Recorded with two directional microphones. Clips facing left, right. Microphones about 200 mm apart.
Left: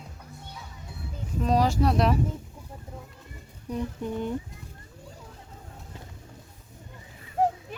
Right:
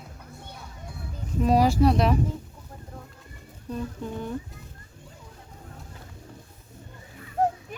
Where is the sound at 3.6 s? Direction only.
15° left (ahead or behind).